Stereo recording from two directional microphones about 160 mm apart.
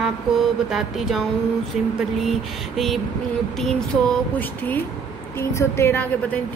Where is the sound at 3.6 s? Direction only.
5° left (ahead or behind).